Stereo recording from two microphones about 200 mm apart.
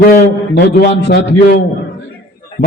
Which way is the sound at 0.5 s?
55° left (ahead or behind).